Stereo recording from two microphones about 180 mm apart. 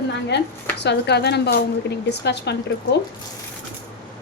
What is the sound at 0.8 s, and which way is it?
Speech, 70° left (ahead or behind).